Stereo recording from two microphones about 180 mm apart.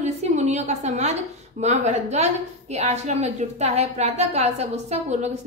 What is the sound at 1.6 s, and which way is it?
A woman's voice, 40° right (ahead or behind).